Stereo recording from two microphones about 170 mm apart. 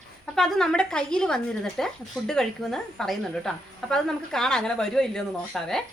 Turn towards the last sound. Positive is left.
turn(degrees=5)  # may be behind; listen again after turning